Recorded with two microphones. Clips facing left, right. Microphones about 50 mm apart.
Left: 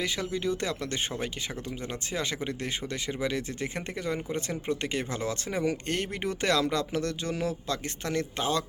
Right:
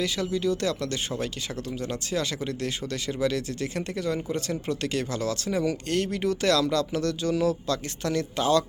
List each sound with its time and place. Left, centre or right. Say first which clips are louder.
0.0 s speech: right 4 dB; left